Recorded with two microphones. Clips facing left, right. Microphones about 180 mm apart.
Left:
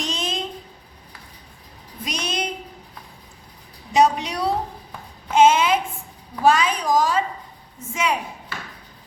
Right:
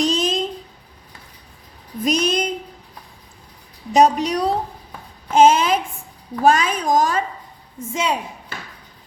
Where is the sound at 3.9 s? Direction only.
40° right (ahead or behind).